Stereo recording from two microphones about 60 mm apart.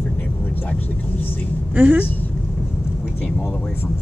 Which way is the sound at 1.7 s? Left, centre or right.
Right.